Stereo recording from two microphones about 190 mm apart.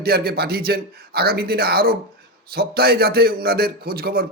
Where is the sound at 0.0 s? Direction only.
55° right (ahead or behind).